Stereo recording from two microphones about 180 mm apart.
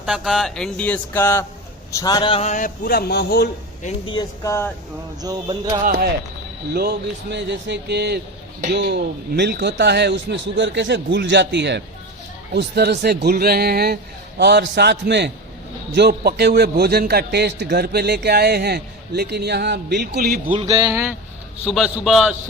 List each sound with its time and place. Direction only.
0.0 s a man's voice: centre (ahead or behind); by 3.5 s 65° left (ahead or behind)
3.8 s speech: 25° left (ahead or behind)
5.2 s a sound: 20° right (ahead or behind)
5.8 s speech: 50° right (ahead or behind)
6.7 s a man's voice: 65° right (ahead or behind)
20.6 s a sound: 25° right (ahead or behind)
20.9 s speech: 15° right (ahead or behind)
21.7 s speech: centre (ahead or behind)